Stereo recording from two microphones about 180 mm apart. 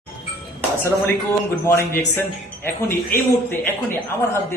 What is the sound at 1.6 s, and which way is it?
A man's voice, 15° left (ahead or behind).